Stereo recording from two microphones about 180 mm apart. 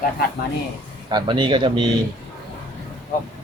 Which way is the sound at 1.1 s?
25° right (ahead or behind).